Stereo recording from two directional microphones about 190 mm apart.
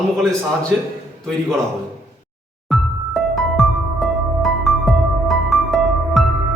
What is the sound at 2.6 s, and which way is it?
Music, centre (ahead or behind).